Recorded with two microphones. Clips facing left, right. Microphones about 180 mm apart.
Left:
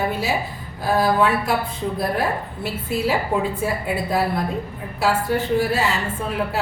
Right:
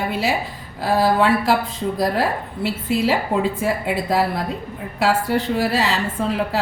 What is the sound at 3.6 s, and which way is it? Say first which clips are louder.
Speech: right 2 dB; 90° right.